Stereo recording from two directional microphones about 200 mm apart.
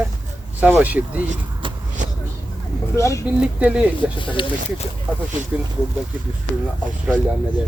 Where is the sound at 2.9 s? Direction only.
15° left (ahead or behind).